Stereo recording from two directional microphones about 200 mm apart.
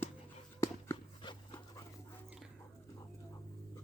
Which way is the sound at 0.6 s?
20° left (ahead or behind).